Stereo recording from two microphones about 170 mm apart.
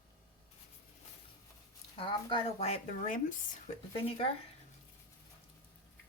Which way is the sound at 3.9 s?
35° left (ahead or behind).